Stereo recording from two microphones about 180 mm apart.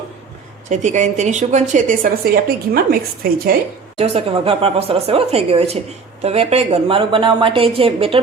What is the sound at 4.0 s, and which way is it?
A woman's voice, 30° right (ahead or behind).